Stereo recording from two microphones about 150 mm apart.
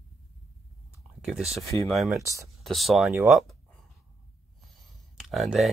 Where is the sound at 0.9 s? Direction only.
5° right (ahead or behind).